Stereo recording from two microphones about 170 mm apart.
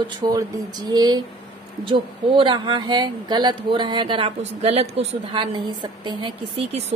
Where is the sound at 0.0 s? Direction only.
25° right (ahead or behind).